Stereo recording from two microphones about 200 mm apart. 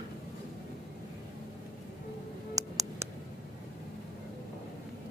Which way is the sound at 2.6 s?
15° right (ahead or behind).